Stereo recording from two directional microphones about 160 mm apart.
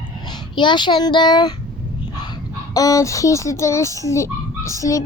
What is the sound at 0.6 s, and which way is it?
Speech, 30° left (ahead or behind).